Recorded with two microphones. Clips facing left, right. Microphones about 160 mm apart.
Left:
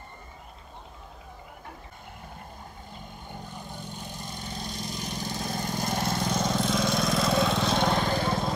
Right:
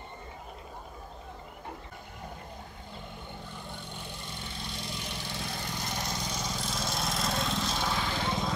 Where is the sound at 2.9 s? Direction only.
45° left (ahead or behind); by 6.8 s 60° left (ahead or behind).